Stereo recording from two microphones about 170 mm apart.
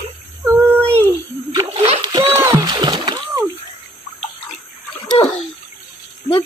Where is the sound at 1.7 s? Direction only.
35° right (ahead or behind).